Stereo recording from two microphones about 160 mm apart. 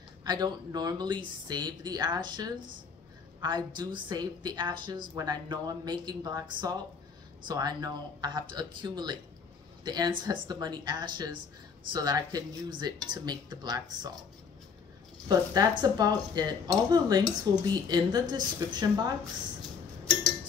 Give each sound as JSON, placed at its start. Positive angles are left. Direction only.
{"t": 0.2, "sound": "speech", "side_deg": -25}
{"t": 15.8, "sound": "speech", "side_deg": -25}